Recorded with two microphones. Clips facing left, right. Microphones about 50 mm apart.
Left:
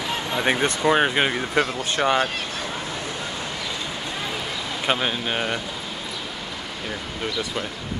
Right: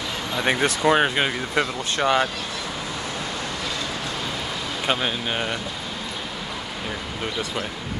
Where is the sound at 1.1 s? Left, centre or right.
Centre.